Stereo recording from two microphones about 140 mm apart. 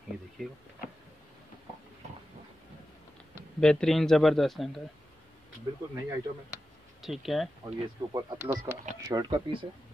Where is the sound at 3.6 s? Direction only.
5° left (ahead or behind).